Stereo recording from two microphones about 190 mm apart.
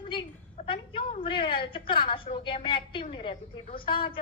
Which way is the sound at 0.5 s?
30° left (ahead or behind).